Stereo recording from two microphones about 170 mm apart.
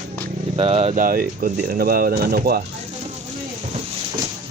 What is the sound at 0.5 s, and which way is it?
Speech, 35° right (ahead or behind).